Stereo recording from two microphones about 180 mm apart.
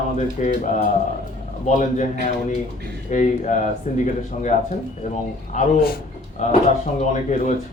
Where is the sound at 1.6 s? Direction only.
40° left (ahead or behind).